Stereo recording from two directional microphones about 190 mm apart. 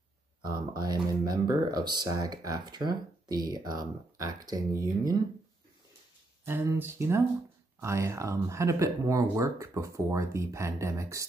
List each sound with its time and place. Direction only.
0.4 s speech: 20° right (ahead or behind)
6.4 s speech: 10° right (ahead or behind)